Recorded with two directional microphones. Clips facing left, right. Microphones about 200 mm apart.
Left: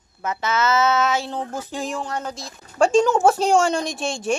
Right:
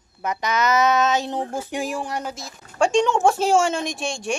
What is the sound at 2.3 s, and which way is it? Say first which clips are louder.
Speech: left 2 dB; centre (ahead or behind).